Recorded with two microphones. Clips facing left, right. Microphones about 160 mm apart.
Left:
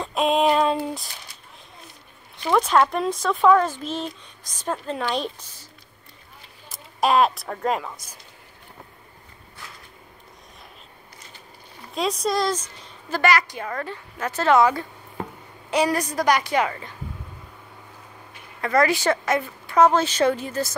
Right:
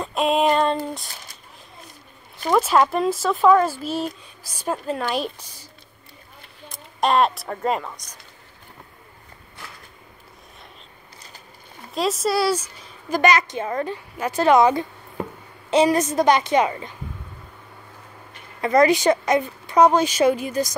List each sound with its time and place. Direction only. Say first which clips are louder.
0.0 s female singing: even; centre (ahead or behind)
2.5 s speech: right 1 dB; 5° right (ahead or behind)
6.7 s speech: even; centre (ahead or behind)
11.9 s a woman's voice: right 2 dB; centre (ahead or behind); by 16.9 s 20° right (ahead or behind)
18.6 s a woman's voice: right 4 dB; 20° right (ahead or behind)